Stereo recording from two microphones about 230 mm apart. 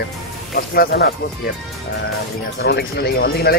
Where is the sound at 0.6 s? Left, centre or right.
Left.